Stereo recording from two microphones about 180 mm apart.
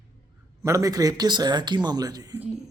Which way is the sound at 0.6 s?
15° right (ahead or behind).